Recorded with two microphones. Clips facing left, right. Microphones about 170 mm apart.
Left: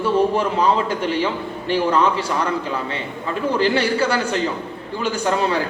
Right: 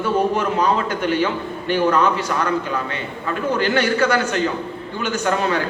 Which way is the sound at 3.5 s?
30° left (ahead or behind).